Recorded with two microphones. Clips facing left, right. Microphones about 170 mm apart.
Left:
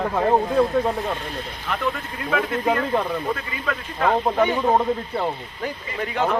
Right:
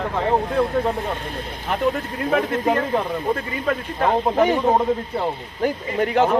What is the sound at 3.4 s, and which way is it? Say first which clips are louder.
Speech: right 5 dB; 45° right (ahead or behind).